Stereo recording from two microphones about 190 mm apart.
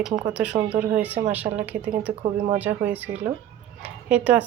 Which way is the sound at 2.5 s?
10° right (ahead or behind).